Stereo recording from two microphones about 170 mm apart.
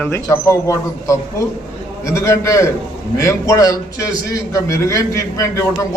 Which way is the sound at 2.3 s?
20° left (ahead or behind).